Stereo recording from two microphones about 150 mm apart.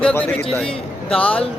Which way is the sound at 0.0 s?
10° left (ahead or behind).